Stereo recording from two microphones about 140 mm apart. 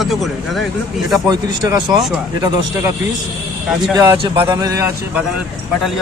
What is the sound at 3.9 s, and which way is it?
Speech, 20° right (ahead or behind).